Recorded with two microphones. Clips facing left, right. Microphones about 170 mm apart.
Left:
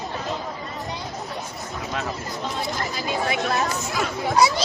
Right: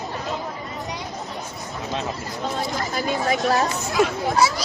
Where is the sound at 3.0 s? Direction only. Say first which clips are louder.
Right 4 dB; 45° right (ahead or behind).